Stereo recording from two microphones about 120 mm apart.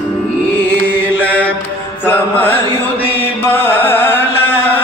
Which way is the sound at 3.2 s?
15° left (ahead or behind).